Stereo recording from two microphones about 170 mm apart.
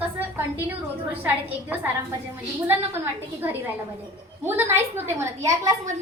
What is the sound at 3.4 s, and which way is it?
A woman's voice, 10° right (ahead or behind).